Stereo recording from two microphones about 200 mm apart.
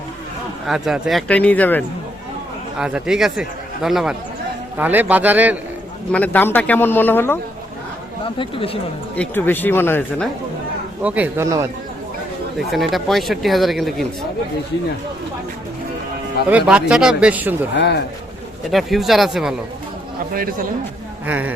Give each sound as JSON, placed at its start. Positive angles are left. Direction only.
{"t": 0.7, "sound": "speech", "side_deg": 0}
{"t": 2.7, "sound": "a man's voice", "side_deg": -5}
{"t": 6.1, "sound": "speech", "side_deg": 5}
{"t": 8.4, "sound": "speech", "side_deg": 25}
{"t": 9.1, "sound": "speech", "side_deg": 10}
{"t": 11.0, "sound": "a man's voice", "side_deg": -5}
{"t": 12.5, "sound": "speech", "side_deg": 0}
{"t": 16.5, "sound": "speech", "side_deg": -5}
{"t": 17.7, "sound": "speech", "side_deg": 55}
{"t": 18.7, "sound": "speech", "side_deg": 0}
{"t": 20.3, "sound": "a man's voice", "side_deg": -45}
{"t": 21.2, "sound": "a man's voice", "side_deg": -10}